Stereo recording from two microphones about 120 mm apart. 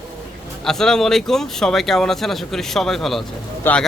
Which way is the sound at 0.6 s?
5° left (ahead or behind).